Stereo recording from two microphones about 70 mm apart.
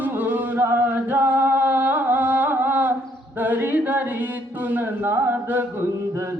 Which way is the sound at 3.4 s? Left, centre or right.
Right.